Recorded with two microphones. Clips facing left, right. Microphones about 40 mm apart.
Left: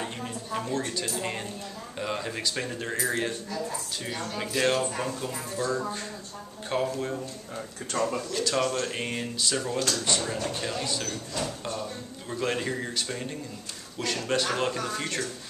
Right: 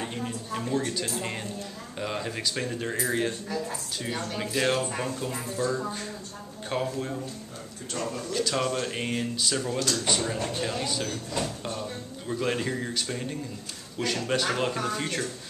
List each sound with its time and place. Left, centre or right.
0.0 s a sound: centre
2.0 s speech: centre
4.4 s speech: centre
8.0 s speech: left
8.3 s speech: centre